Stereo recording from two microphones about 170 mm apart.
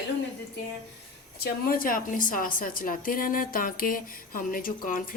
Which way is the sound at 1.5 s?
60° left (ahead or behind).